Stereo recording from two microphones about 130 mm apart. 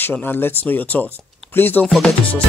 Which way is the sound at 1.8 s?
Centre (ahead or behind).